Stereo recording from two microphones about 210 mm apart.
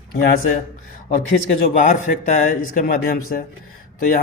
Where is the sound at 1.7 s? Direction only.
35° left (ahead or behind).